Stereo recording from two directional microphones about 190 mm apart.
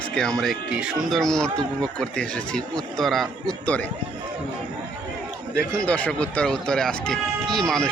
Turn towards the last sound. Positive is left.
turn(degrees=5)  # may be behind; listen again after turning